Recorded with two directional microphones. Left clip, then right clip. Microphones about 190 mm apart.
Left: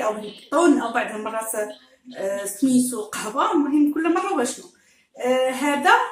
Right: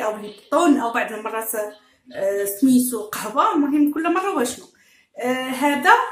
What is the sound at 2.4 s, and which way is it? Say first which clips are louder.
Speech: right 1 dB; 40° right (ahead or behind).